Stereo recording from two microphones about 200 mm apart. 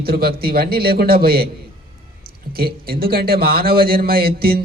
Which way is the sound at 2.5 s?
50° right (ahead or behind).